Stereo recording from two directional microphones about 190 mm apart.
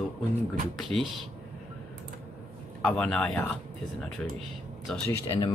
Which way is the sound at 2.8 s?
5° left (ahead or behind).